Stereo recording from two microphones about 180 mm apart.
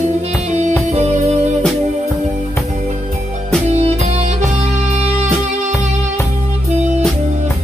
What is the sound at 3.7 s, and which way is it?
Music, 35° right (ahead or behind).